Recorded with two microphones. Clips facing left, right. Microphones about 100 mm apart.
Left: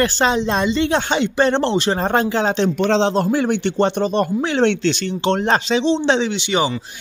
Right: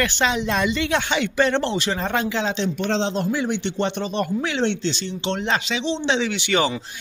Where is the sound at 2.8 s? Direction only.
75° left (ahead or behind).